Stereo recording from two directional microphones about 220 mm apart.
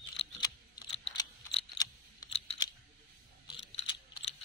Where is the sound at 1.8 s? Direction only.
20° left (ahead or behind).